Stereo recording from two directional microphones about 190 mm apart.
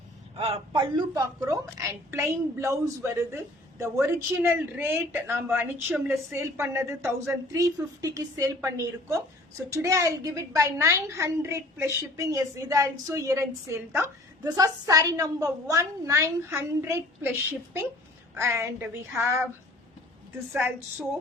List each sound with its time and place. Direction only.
0.3 s a woman's voice: 30° right (ahead or behind); by 17.3 s 10° right (ahead or behind)
18.3 s a woman's voice: 15° right (ahead or behind)
20.5 s a woman's voice: 10° right (ahead or behind)